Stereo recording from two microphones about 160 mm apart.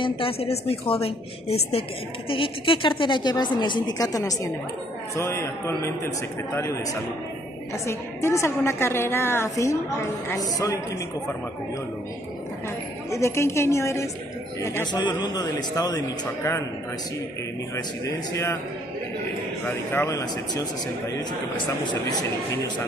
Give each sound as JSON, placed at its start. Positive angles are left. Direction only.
{"t": 0.0, "sound": "a woman's voice", "side_deg": 35}
{"t": 13.1, "sound": "a woman's voice", "side_deg": 15}
{"t": 14.9, "sound": "a man's voice", "side_deg": 30}
{"t": 18.0, "sound": "a woman's voice", "side_deg": 15}
{"t": 19.9, "sound": "a man's voice", "side_deg": 20}